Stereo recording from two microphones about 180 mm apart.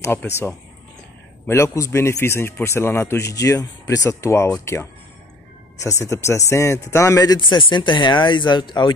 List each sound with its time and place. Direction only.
0.0 s a man's voice: 15° left (ahead or behind)